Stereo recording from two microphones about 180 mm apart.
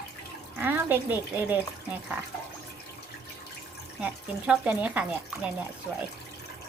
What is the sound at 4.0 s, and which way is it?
Speech, 5° right (ahead or behind).